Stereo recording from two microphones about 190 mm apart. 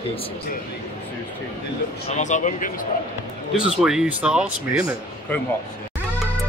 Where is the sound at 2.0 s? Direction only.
40° left (ahead or behind).